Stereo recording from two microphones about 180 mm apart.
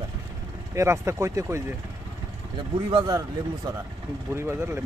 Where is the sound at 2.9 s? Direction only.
20° right (ahead or behind).